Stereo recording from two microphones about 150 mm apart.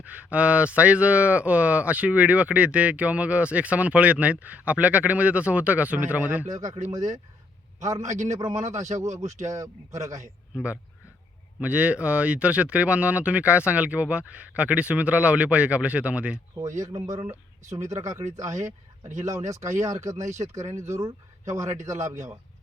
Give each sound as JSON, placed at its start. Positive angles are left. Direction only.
{"t": 0.0, "sound": "speech", "side_deg": -10}
{"t": 7.8, "sound": "a man's voice", "side_deg": -20}
{"t": 10.5, "sound": "speech", "side_deg": -10}
{"t": 16.6, "sound": "speech", "side_deg": -20}